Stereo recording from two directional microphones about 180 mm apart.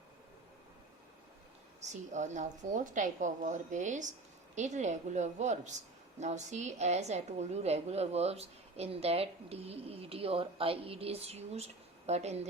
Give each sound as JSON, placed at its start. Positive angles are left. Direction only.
{"t": 1.8, "sound": "a woman's voice", "side_deg": -40}